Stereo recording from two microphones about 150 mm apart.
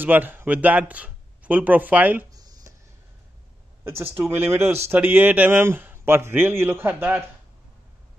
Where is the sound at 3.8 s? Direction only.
15° right (ahead or behind).